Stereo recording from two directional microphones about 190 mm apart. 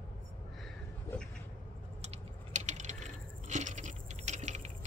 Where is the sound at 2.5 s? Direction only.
40° right (ahead or behind).